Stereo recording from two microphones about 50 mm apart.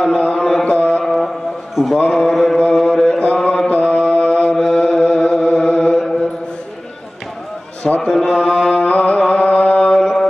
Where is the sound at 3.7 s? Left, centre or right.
Left.